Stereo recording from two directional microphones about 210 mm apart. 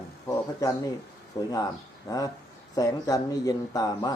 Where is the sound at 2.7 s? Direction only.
15° left (ahead or behind).